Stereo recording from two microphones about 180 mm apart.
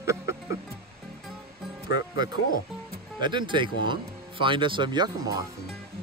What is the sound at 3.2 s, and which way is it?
Speech, 25° right (ahead or behind).